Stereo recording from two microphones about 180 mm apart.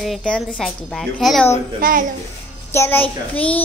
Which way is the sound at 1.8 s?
45° right (ahead or behind).